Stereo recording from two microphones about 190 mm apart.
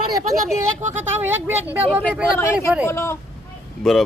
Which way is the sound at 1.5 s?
10° right (ahead or behind).